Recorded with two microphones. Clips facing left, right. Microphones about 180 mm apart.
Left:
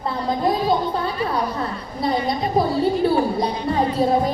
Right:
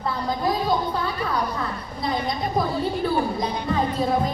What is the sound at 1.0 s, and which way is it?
Speech, 30° left (ahead or behind).